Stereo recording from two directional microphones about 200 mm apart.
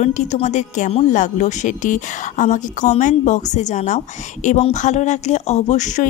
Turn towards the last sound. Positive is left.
turn(degrees=35)  # may be behind; listen again after turning